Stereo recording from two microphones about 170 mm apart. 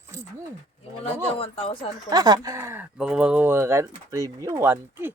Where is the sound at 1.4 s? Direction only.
35° left (ahead or behind).